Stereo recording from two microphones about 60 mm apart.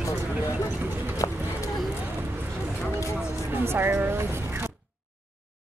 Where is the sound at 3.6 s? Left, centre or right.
Right.